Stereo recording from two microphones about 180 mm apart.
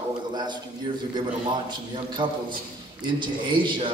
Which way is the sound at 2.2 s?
30° right (ahead or behind).